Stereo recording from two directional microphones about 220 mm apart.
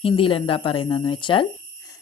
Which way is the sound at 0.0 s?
25° left (ahead or behind).